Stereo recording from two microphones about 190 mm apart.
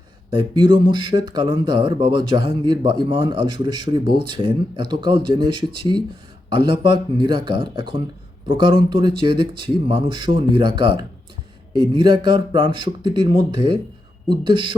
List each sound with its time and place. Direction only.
0.3 s speech: 25° right (ahead or behind)